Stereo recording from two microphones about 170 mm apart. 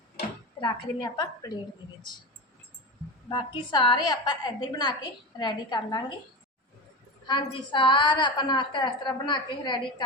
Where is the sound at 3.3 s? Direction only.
30° left (ahead or behind).